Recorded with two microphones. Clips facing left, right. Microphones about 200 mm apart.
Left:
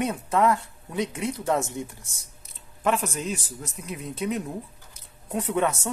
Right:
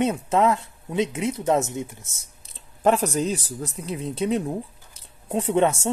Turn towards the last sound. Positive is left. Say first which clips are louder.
# right 5 dB
turn(degrees=-25)  # may be behind; listen again after turning